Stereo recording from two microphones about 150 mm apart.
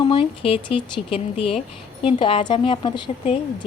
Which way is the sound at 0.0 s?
35° left (ahead or behind).